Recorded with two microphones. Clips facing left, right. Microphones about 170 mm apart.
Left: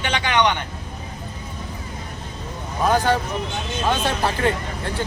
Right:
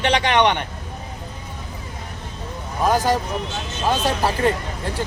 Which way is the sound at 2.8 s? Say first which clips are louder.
Even; 10° right (ahead or behind).